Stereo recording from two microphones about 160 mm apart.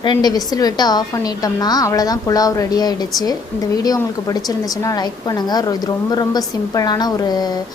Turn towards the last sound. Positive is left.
turn(degrees=25)  # may be behind; listen again after turning